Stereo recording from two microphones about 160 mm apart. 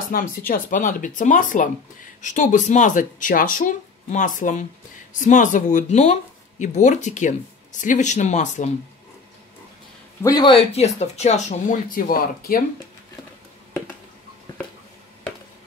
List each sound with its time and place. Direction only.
0.1 s speech: 65° left (ahead or behind)
10.2 s speech: 25° left (ahead or behind)
10.7 s speech: 40° left (ahead or behind); by 12.6 s 65° left (ahead or behind)